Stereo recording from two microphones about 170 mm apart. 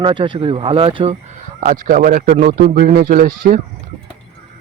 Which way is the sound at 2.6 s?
60° right (ahead or behind).